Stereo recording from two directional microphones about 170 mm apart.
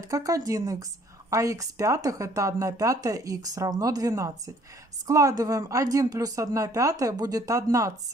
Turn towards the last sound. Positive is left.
turn(degrees=-20)  # may be behind; listen again after turning